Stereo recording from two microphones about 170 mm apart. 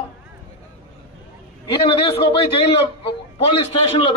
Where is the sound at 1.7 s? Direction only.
30° left (ahead or behind).